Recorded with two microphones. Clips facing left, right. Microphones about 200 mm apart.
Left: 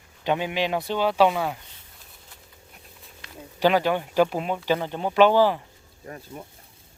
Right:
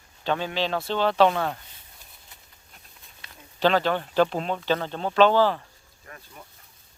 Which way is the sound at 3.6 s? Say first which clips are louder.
Left 1 dB; 10° left (ahead or behind).